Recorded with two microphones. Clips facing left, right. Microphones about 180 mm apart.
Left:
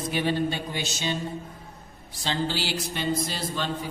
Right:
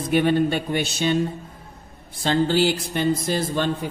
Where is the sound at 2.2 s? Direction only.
50° right (ahead or behind).